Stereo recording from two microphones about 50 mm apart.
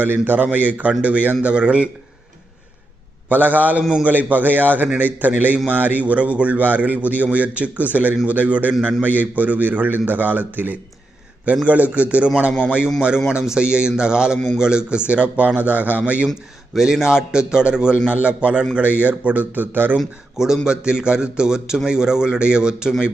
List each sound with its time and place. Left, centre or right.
0.0 s a man's voice: right
3.2 s a man's voice: right
16.7 s a man's voice: centre; by 20.0 s right
20.3 s a man's voice: centre